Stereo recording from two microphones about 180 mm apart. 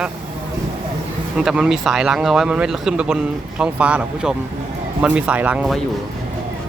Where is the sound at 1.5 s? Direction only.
5° right (ahead or behind).